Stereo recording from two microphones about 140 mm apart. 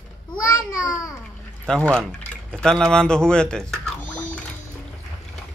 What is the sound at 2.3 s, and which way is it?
Speech, 5° left (ahead or behind).